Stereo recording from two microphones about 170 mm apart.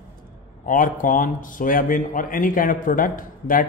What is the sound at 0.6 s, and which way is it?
A man's voice, 50° left (ahead or behind).